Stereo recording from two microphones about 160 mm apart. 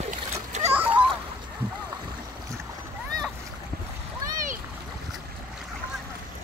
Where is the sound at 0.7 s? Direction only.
10° right (ahead or behind).